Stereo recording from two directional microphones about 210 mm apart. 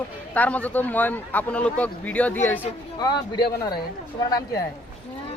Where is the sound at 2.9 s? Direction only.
20° left (ahead or behind).